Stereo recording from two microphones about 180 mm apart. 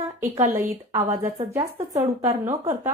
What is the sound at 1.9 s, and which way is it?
A woman's voice, 15° right (ahead or behind).